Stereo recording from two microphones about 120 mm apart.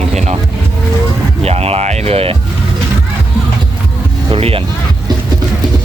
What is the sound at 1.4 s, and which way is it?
Speech, 60° right (ahead or behind).